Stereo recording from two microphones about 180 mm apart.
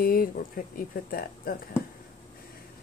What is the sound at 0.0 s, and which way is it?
Speech, 55° left (ahead or behind).